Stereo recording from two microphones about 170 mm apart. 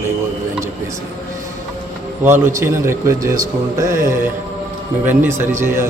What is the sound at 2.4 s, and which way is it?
Speech, 15° right (ahead or behind).